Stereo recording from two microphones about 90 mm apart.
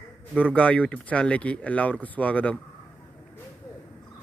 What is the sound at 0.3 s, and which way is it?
Speech, 15° left (ahead or behind).